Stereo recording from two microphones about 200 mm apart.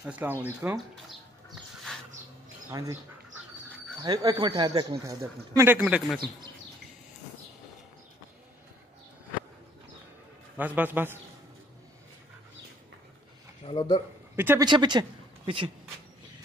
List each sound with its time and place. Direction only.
0.0 s speech: 10° right (ahead or behind)
2.7 s speech: 15° right (ahead or behind)
4.0 s speech: 20° right (ahead or behind)
5.8 s speech: 5° right (ahead or behind)
10.6 s speech: 10° right (ahead or behind)
13.7 s speech: 25° left (ahead or behind)
14.3 s speech: 10° right (ahead or behind)
14.7 s a woman's voice: 20° right (ahead or behind)